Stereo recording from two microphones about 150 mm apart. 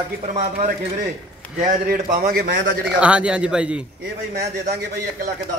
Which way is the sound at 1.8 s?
90° right.